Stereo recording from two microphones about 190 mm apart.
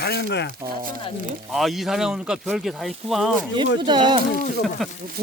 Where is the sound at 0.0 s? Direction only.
60° left (ahead or behind).